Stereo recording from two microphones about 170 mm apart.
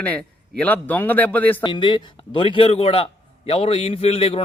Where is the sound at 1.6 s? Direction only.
25° left (ahead or behind).